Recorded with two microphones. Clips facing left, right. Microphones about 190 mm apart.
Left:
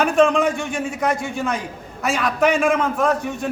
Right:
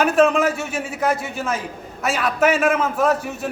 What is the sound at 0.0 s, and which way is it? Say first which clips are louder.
A man's voice: even; 5° right (ahead or behind).